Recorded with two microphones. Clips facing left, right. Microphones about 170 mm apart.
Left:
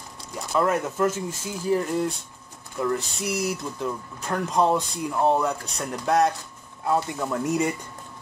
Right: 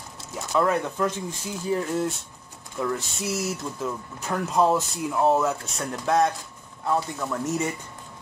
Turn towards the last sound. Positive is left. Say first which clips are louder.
# left 2 dB
turn(degrees=15)  # may be behind; listen again after turning